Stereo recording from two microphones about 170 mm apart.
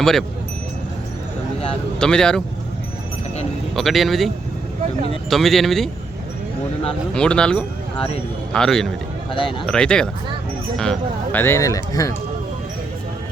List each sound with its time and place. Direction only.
0.0 s speech: centre (ahead or behind)
2.0 s speech: 5° left (ahead or behind)
3.8 s speech: centre (ahead or behind)
5.3 s speech: centre (ahead or behind)
7.1 s speech: 5° left (ahead or behind)
7.9 s speech: 35° left (ahead or behind)
8.5 s speech: 5° left (ahead or behind)
9.3 s speech: 30° left (ahead or behind)
9.6 s speech: 5° left (ahead or behind)